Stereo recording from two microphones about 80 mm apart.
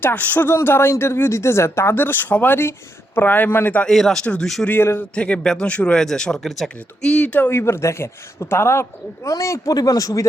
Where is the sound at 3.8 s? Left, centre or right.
Centre.